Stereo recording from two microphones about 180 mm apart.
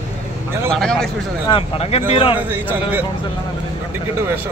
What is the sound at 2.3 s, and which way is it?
Speech, 10° right (ahead or behind).